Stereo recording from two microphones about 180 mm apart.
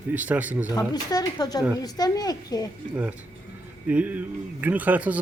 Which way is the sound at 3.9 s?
10° right (ahead or behind).